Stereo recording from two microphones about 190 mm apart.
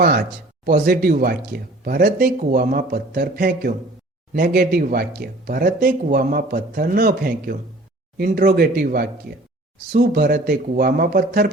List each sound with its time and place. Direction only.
0.6 s speech: 50° right (ahead or behind)